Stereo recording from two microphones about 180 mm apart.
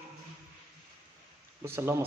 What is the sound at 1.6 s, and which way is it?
Speech, 15° right (ahead or behind).